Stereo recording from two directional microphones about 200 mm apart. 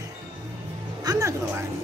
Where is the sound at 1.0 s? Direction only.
20° right (ahead or behind).